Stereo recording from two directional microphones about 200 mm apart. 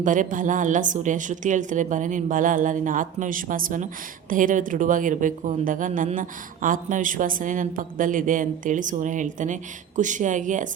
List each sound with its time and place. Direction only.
0.0 s a woman's voice: 40° right (ahead or behind)